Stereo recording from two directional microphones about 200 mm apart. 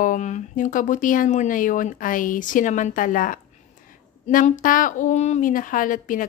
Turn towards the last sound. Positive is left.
turn(degrees=40)  # may be behind; listen again after turning